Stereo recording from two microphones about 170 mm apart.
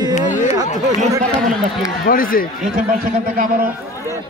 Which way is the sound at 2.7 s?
55° right (ahead or behind).